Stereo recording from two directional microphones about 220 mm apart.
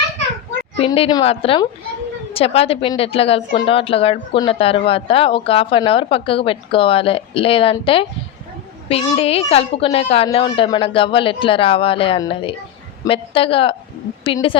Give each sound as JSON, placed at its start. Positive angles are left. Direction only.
{"t": 0.8, "sound": "a woman's voice", "side_deg": 25}